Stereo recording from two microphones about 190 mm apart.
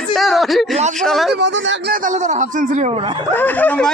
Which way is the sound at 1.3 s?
65° right (ahead or behind).